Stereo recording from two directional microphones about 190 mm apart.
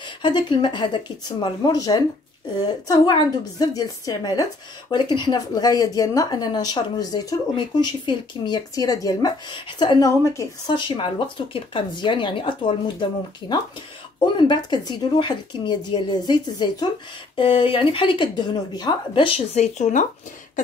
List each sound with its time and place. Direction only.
0.0 s speech: 25° left (ahead or behind); by 20.1 s 40° left (ahead or behind)